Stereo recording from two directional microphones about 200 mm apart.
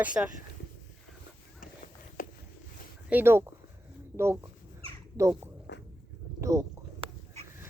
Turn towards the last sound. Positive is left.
turn(degrees=-15)  # may be behind; listen again after turning